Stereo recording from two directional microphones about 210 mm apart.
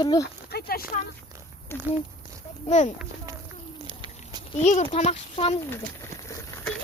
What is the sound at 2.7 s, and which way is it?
Speech, 35° left (ahead or behind).